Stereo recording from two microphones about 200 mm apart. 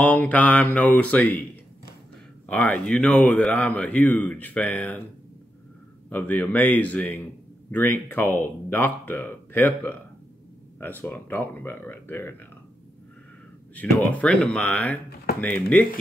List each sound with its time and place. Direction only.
0.0 s speech: 5° left (ahead or behind)
2.4 s speech: 5° left (ahead or behind)
6.0 s speech: 10° left (ahead or behind)
14.1 s speech: 5° left (ahead or behind)